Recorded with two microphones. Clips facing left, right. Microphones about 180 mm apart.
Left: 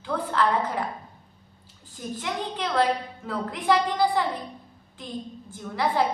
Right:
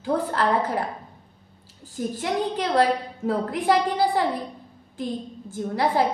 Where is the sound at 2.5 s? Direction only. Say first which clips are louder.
Right 4 dB; 40° right (ahead or behind).